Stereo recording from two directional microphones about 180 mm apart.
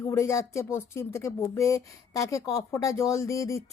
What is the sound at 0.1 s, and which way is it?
A woman's voice, 15° left (ahead or behind).